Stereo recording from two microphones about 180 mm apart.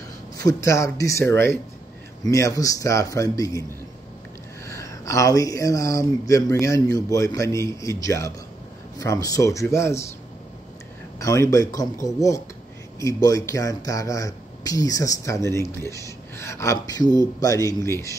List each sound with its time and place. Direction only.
0.4 s speech: 20° left (ahead or behind)
4.6 s speech: 15° left (ahead or behind)
11.1 s speech: 15° left (ahead or behind)